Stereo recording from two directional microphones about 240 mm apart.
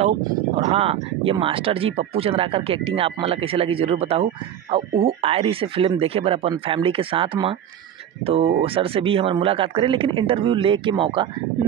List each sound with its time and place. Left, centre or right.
0.6 s speech: right